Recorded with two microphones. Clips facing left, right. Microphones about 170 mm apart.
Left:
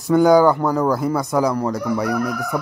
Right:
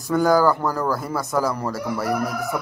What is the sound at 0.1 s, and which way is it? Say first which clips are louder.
Speech: left 5 dB; centre (ahead or behind).